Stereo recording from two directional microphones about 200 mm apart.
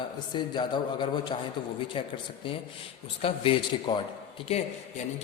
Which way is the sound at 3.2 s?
25° left (ahead or behind).